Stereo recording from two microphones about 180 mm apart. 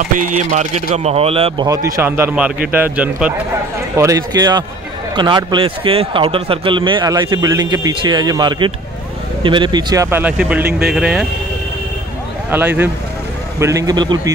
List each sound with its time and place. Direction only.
0.1 s speech: 45° right (ahead or behind)
1.7 s a man's voice: 20° right (ahead or behind)
12.4 s a man's voice: 10° right (ahead or behind)